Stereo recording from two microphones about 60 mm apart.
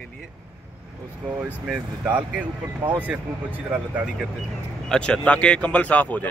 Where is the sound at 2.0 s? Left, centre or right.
Right.